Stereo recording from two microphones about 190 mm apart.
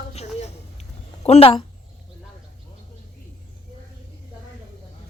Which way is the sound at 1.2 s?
30° left (ahead or behind).